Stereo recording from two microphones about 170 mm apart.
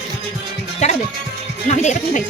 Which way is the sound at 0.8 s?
45° left (ahead or behind).